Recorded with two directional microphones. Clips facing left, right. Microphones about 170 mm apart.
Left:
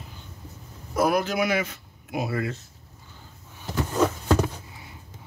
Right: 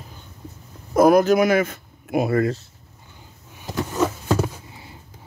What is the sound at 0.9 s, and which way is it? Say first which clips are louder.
Speech: right 9 dB; 45° right (ahead or behind).